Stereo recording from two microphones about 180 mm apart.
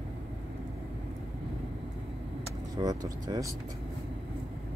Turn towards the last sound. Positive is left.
turn(degrees=-20)  # may be behind; listen again after turning